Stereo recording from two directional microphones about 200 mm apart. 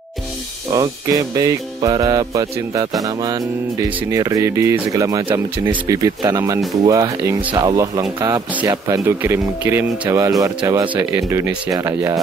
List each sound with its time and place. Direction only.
0.7 s speech: 20° right (ahead or behind)
4.1 s speech: 15° right (ahead or behind)